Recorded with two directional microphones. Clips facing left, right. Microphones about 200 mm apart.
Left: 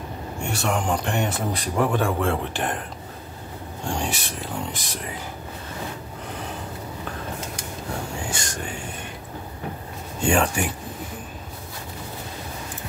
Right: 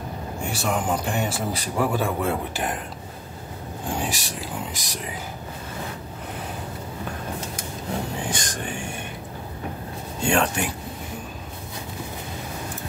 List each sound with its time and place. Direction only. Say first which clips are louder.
0.4 s speech: left 1 dB; centre (ahead or behind)
3.9 s speech: even; centre (ahead or behind)
8.3 s train: right 2 dB; 15° right (ahead or behind)
10.2 s speech: left 1 dB; 5° left (ahead or behind)